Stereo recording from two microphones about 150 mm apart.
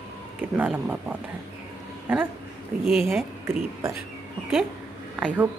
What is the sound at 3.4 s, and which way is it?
Speech, 15° right (ahead or behind).